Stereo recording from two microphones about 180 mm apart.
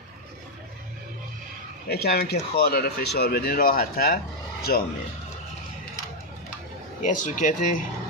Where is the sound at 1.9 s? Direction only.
60° left (ahead or behind).